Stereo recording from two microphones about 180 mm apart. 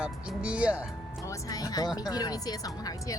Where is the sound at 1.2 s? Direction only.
20° left (ahead or behind).